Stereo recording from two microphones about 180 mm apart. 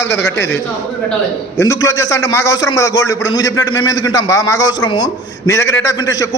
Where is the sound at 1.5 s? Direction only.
20° left (ahead or behind).